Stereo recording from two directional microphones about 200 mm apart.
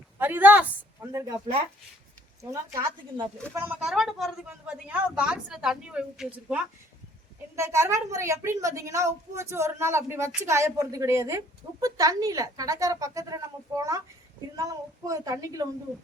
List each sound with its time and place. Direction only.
0.2 s a woman's voice: 10° right (ahead or behind)
2.4 s a woman's voice: 15° right (ahead or behind)